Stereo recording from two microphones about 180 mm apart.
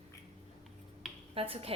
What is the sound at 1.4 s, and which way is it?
Speech, 30° right (ahead or behind).